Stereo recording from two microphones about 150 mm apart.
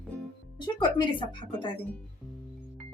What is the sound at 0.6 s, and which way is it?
Speech, 35° left (ahead or behind).